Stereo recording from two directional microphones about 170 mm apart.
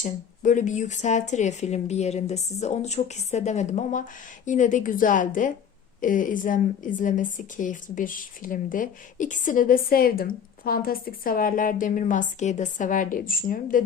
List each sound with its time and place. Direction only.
0.0 s a woman's voice: 50° left (ahead or behind)